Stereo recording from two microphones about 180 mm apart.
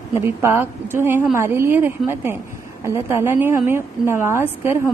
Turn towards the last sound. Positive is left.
turn(degrees=-15)  # may be behind; listen again after turning